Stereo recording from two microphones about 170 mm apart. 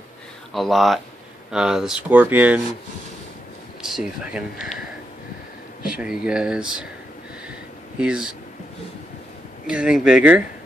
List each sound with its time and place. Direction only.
0.5 s speech: centre (ahead or behind)
3.8 s speech: 5° right (ahead or behind)
5.9 s speech: 5° right (ahead or behind)
8.0 s speech: 5° right (ahead or behind)
9.7 s speech: 5° right (ahead or behind)